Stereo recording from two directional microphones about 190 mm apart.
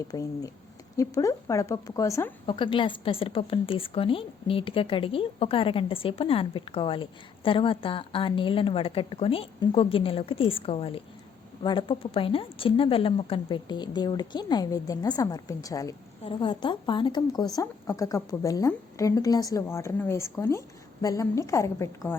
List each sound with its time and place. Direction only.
0.1 s speech: 20° left (ahead or behind)